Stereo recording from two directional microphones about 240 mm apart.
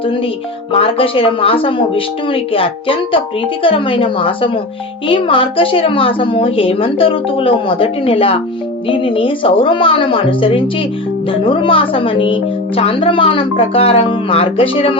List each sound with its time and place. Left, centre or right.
0.7 s speech: left